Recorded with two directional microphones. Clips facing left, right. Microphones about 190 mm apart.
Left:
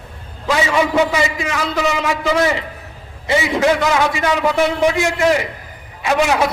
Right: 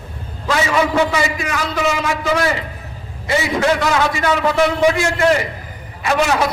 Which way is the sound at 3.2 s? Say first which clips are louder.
Left 1 dB; 20° left (ahead or behind).